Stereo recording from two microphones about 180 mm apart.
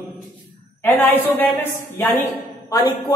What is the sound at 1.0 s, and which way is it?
Speech, 10° left (ahead or behind).